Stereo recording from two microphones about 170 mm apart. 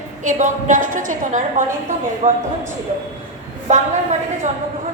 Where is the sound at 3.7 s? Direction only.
45° right (ahead or behind).